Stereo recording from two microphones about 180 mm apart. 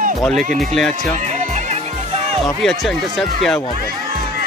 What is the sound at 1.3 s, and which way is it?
Music, 40° right (ahead or behind).